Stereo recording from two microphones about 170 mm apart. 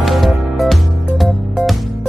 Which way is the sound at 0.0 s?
Centre (ahead or behind).